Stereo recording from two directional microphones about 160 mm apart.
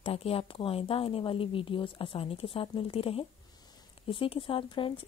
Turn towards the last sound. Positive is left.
turn(degrees=30)  # may be behind; listen again after turning